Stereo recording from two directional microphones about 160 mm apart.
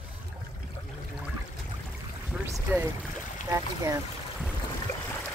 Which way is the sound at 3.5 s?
20° right (ahead or behind).